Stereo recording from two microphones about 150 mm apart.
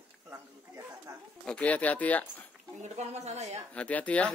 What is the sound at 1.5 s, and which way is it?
Speech, 10° left (ahead or behind).